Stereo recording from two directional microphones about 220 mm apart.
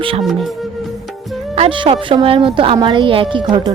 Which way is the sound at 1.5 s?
25° right (ahead or behind).